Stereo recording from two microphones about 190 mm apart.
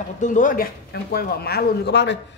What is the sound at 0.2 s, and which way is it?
Speech, 45° left (ahead or behind).